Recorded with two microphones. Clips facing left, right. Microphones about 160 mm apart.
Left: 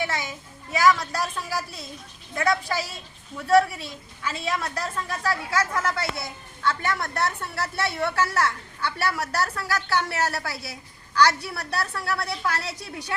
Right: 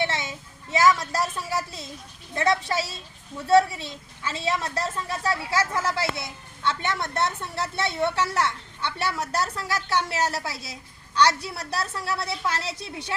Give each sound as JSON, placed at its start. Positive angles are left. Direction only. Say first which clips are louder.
{"t": 0.0, "sound": "a woman's voice", "louder": "right 1 dB", "side_deg": -25}